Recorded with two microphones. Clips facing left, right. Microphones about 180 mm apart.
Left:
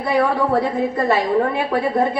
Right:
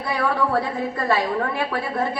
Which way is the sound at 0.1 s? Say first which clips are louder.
Left 4 dB; 20° left (ahead or behind).